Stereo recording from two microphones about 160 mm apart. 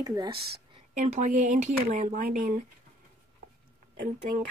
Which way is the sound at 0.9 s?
50° right (ahead or behind).